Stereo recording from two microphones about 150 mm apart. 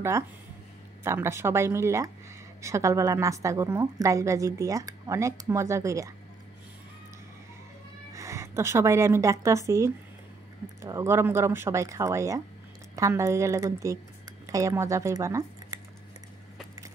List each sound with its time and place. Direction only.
1.0 s a woman's voice: 15° right (ahead or behind)
8.1 s a woman's voice: 20° right (ahead or behind)